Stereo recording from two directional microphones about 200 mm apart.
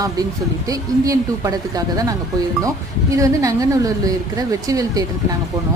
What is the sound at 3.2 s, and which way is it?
A woman's voice, 15° right (ahead or behind).